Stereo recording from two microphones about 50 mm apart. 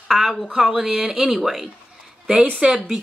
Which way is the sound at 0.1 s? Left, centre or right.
Centre.